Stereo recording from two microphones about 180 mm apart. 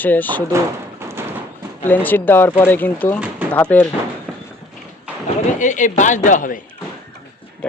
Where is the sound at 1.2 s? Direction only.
15° right (ahead or behind).